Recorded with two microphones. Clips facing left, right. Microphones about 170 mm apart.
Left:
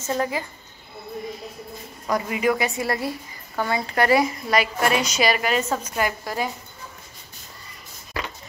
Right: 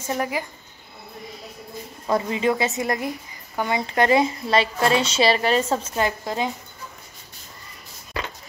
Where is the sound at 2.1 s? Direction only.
25° right (ahead or behind).